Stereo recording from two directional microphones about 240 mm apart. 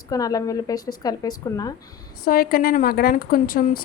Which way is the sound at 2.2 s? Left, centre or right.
Left.